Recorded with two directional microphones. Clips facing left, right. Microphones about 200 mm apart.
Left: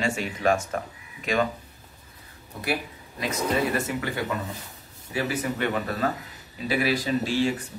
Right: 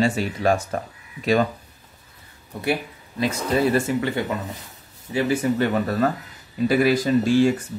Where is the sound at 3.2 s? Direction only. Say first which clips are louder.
Right 4 dB; 30° right (ahead or behind).